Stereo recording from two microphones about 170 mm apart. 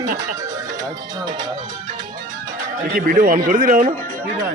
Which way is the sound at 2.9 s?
55° right (ahead or behind).